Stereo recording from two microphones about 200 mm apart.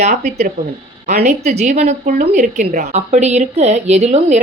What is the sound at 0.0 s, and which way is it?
A woman's voice, 35° right (ahead or behind).